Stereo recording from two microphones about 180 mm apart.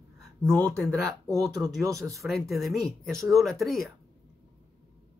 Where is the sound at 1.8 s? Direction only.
15° right (ahead or behind).